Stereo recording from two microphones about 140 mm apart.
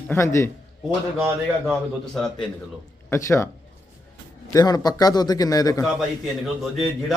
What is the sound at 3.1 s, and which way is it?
Speech, 20° left (ahead or behind).